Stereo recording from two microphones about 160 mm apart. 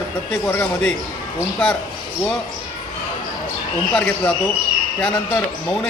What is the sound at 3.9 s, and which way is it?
A man's voice, 10° left (ahead or behind).